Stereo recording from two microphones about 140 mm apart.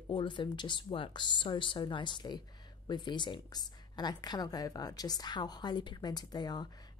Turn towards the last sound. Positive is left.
turn(degrees=30)  # may be behind; listen again after turning